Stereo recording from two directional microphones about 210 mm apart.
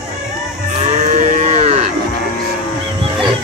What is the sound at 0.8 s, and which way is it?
Moo, 35° right (ahead or behind).